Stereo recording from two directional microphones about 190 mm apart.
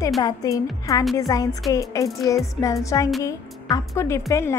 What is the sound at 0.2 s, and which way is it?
A woman's voice, 20° left (ahead or behind).